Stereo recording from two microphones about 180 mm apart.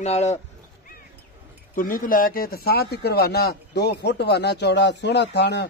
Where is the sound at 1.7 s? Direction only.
50° left (ahead or behind).